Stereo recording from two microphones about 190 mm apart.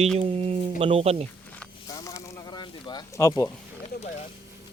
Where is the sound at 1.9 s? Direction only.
15° left (ahead or behind).